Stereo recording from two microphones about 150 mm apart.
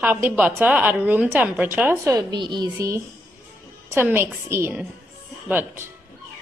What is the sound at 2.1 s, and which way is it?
Speech, 30° right (ahead or behind).